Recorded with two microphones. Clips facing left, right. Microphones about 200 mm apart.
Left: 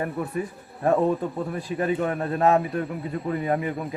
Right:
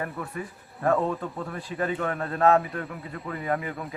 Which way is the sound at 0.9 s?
15° left (ahead or behind).